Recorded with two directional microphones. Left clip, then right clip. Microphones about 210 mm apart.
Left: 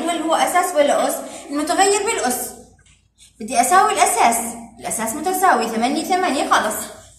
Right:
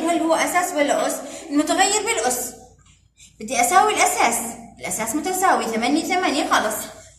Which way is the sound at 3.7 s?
20° right (ahead or behind).